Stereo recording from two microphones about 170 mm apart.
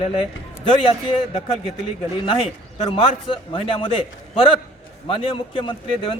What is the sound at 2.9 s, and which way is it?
Speech, 30° left (ahead or behind).